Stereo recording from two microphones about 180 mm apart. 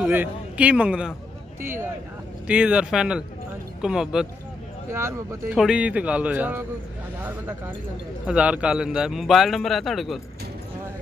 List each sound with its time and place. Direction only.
0.0 s a man's voice: 10° right (ahead or behind)
4.9 s speech: 15° right (ahead or behind)
5.5 s a man's voice: 5° right (ahead or behind)